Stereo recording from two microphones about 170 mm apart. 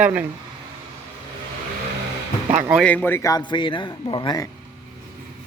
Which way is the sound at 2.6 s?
10° right (ahead or behind).